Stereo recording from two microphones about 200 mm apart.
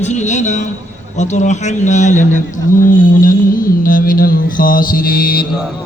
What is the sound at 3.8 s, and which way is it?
Mantra, 45° left (ahead or behind).